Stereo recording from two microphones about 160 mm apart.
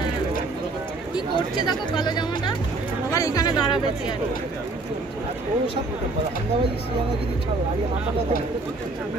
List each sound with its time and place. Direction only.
1.1 s speech: 25° left (ahead or behind)